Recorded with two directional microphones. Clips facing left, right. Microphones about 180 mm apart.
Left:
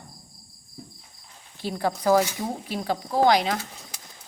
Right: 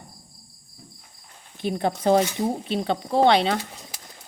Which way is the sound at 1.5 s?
20° right (ahead or behind).